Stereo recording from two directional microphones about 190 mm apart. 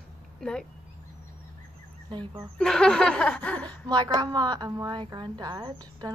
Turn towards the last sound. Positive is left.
turn(degrees=-20)  # may be behind; listen again after turning